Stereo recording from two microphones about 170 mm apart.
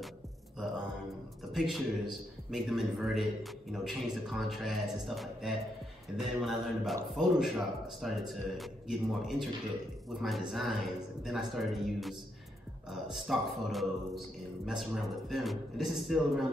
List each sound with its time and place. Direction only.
1.5 s a man's voice: centre (ahead or behind)